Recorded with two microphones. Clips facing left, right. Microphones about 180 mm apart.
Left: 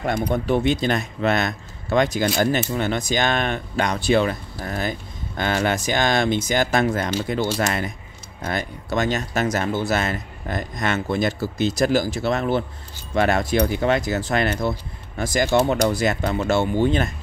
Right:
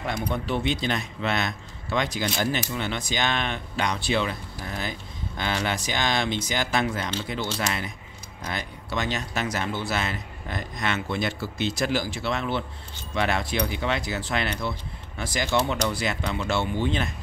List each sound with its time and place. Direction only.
0.0 s speech: 50° left (ahead or behind)